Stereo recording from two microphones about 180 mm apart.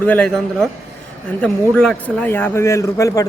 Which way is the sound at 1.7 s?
5° left (ahead or behind).